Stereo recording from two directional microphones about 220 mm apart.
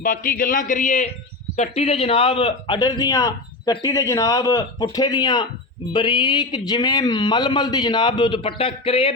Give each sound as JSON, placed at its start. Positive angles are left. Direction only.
{"t": 0.0, "sound": "a man's voice", "side_deg": 40}